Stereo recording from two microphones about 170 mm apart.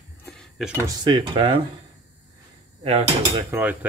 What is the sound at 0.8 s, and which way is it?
Speech, 25° right (ahead or behind).